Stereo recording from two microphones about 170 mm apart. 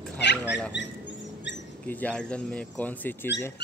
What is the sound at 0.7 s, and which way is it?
Speech, 90° left.